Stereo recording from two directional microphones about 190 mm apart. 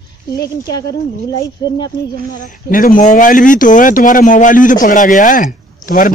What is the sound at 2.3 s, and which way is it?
Speech, 45° left (ahead or behind).